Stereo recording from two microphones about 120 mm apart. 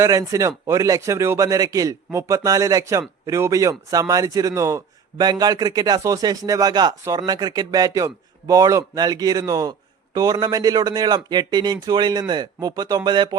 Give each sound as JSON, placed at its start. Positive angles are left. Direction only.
{"t": 0.0, "sound": "speech", "side_deg": -30}